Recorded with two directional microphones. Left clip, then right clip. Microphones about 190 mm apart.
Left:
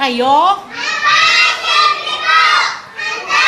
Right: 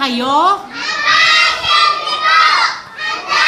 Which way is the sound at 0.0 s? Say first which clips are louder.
Left 2 dB; 10° left (ahead or behind).